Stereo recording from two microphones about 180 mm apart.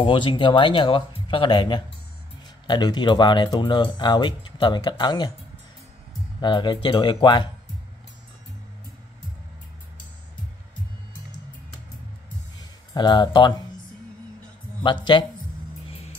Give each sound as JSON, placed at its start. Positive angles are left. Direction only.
{"t": 0.0, "sound": "speech", "side_deg": 30}
{"t": 6.4, "sound": "speech", "side_deg": 25}
{"t": 12.9, "sound": "speech", "side_deg": 25}
{"t": 14.8, "sound": "speech", "side_deg": 25}